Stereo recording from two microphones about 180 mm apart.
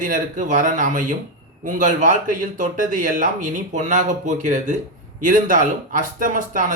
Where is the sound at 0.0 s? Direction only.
45° right (ahead or behind).